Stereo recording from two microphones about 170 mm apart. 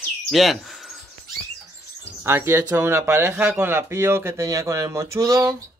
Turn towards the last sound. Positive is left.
turn(degrees=-20)  # may be behind; listen again after turning